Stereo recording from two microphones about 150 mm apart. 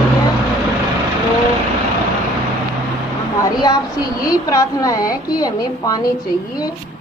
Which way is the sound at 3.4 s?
25° left (ahead or behind).